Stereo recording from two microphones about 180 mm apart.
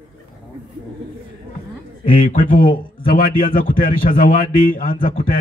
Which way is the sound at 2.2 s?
50° left (ahead or behind).